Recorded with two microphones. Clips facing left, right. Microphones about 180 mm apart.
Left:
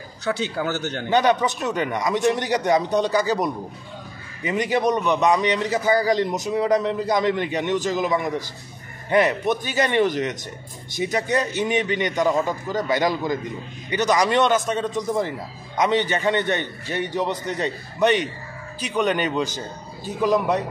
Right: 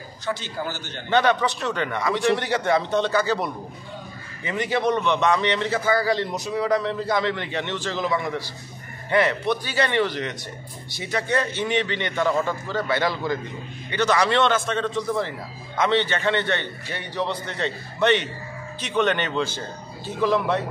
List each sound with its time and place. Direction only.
0.6 s a man's voice: 60° left (ahead or behind)
1.1 s a man's voice: 15° left (ahead or behind)